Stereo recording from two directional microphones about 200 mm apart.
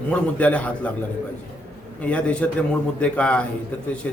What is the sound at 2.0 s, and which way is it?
A man's voice, 5° left (ahead or behind).